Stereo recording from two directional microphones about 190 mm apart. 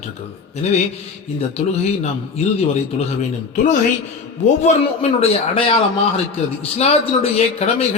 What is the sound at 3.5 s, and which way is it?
A man's voice, 40° left (ahead or behind).